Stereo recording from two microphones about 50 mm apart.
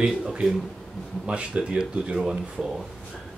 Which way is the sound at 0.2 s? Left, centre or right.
Centre.